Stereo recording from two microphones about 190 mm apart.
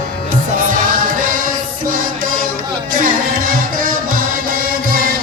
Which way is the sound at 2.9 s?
50° right (ahead or behind).